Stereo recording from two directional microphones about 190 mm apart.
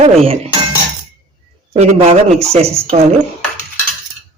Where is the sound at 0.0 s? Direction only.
30° right (ahead or behind).